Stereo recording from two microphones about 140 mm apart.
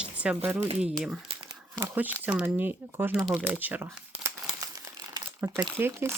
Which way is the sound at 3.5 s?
15° right (ahead or behind).